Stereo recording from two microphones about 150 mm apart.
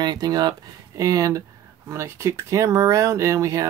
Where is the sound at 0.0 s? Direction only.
25° right (ahead or behind).